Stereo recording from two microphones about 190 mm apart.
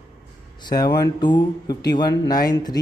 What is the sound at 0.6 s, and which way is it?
Speech, 20° left (ahead or behind).